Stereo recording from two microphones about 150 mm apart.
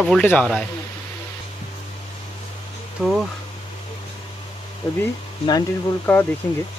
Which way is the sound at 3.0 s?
Centre (ahead or behind).